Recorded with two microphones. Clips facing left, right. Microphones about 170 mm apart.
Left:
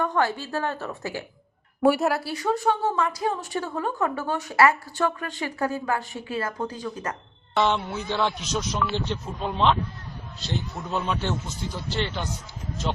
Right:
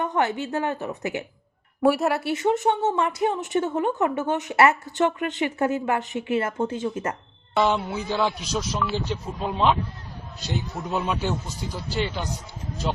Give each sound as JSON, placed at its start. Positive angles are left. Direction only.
{"t": 0.0, "sound": "a woman's voice", "side_deg": -20}
{"t": 1.8, "sound": "speech", "side_deg": 0}
{"t": 2.2, "sound": "a woman's voice", "side_deg": -25}
{"t": 7.5, "sound": "speech", "side_deg": -5}
{"t": 10.8, "sound": "a man's voice", "side_deg": -15}